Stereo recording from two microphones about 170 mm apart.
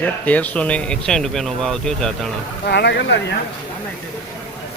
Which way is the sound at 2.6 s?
85° left.